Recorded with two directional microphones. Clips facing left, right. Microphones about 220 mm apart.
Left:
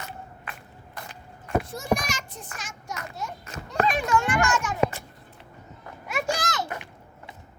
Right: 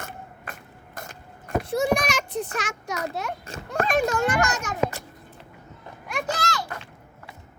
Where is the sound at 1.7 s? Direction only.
65° right (ahead or behind).